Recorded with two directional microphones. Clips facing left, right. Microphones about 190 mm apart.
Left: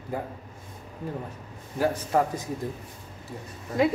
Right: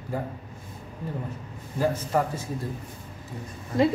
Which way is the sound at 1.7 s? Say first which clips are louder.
Left 1 dB; 10° left (ahead or behind).